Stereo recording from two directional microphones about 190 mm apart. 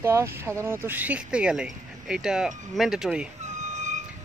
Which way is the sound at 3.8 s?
40° right (ahead or behind).